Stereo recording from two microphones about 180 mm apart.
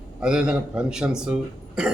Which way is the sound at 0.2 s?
5° right (ahead or behind).